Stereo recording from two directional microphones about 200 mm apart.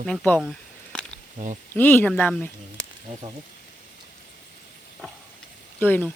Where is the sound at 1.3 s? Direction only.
35° right (ahead or behind).